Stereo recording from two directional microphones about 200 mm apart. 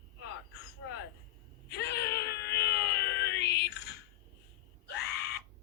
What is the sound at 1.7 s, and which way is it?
Wail, 55° left (ahead or behind).